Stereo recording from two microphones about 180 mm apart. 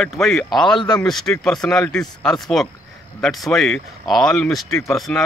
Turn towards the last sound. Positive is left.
turn(degrees=10)  # may be behind; listen again after turning